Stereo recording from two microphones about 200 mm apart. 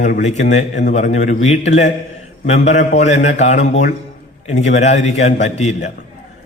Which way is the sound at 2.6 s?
35° left (ahead or behind).